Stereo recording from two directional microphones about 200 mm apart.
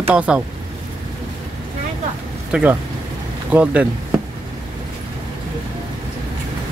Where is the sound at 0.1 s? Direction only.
5° right (ahead or behind).